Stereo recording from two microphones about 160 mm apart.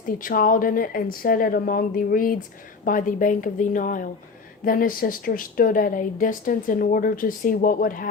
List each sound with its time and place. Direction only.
0.2 s speech: 60° left (ahead or behind)